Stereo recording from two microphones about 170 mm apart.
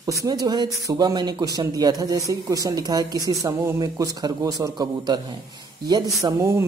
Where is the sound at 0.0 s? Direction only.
20° right (ahead or behind).